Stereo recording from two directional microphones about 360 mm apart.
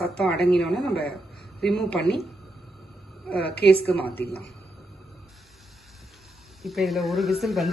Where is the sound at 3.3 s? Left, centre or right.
Left.